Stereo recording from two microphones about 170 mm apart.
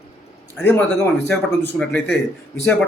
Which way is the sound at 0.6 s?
10° left (ahead or behind).